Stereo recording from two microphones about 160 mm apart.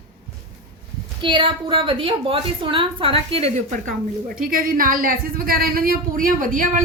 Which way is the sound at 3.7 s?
55° right (ahead or behind).